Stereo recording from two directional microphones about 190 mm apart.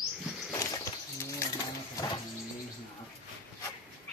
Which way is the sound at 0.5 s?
15° left (ahead or behind).